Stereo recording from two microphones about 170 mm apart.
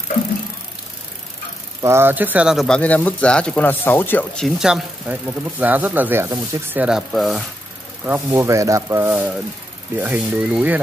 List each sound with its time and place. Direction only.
1.8 s speech: 15° right (ahead or behind)
8.0 s speech: 15° right (ahead or behind)
9.1 s speech: 5° right (ahead or behind)